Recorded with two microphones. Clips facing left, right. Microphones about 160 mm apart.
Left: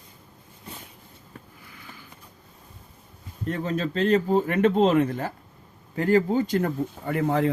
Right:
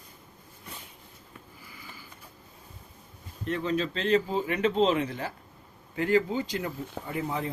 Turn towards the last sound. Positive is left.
turn(degrees=75)  # may be behind; listen again after turning